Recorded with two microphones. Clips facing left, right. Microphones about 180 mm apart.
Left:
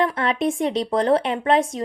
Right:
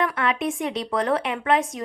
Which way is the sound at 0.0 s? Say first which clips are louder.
Left 3 dB; 30° left (ahead or behind).